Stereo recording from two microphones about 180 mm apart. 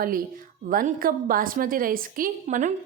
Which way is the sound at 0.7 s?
50° right (ahead or behind).